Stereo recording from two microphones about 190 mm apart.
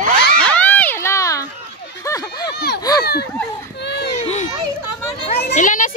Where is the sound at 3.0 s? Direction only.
60° left (ahead or behind).